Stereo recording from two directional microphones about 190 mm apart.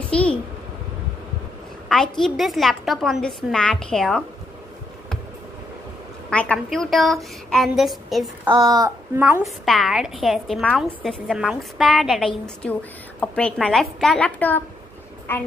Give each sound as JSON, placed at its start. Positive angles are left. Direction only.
{"t": 0.1, "sound": "a child's voice", "side_deg": 5}
{"t": 1.9, "sound": "a woman's voice", "side_deg": 5}
{"t": 6.3, "sound": "a woman's voice", "side_deg": 5}
{"t": 8.5, "sound": "a woman's voice", "side_deg": -20}
{"t": 9.7, "sound": "a woman's voice", "side_deg": 0}